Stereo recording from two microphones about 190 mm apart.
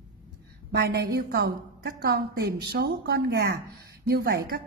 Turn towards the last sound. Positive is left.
turn(degrees=-55)  # may be behind; listen again after turning